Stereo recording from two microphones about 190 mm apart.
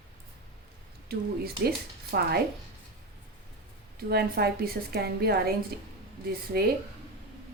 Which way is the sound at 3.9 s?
55° right (ahead or behind).